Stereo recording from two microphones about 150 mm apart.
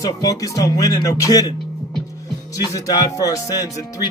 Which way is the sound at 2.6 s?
25° left (ahead or behind).